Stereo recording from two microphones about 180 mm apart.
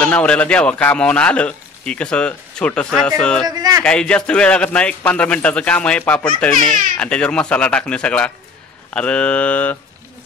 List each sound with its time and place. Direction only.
0.0 s a man's voice: 5° left (ahead or behind)
3.4 s speech: 20° right (ahead or behind)
3.8 s a man's voice: 5° left (ahead or behind)